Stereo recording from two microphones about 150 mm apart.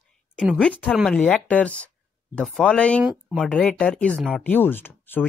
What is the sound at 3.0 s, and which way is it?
Speech, 10° right (ahead or behind).